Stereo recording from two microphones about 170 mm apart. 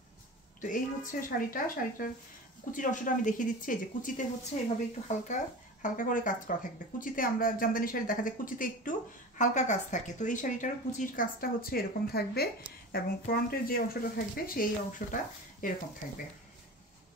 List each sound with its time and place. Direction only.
0.6 s speech: 50° left (ahead or behind)